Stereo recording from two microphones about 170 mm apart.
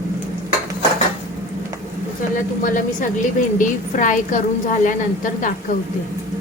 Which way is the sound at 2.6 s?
50° left (ahead or behind).